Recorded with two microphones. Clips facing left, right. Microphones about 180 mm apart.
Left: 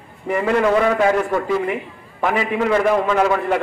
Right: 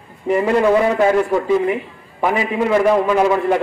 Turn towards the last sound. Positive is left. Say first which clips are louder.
# right 2 dB
turn(degrees=-15)  # may be behind; listen again after turning